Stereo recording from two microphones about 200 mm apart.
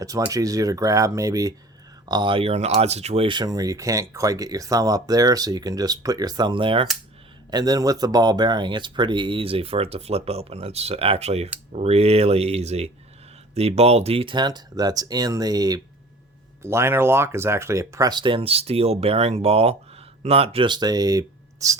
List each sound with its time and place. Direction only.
0.0 s speech: 15° right (ahead or behind)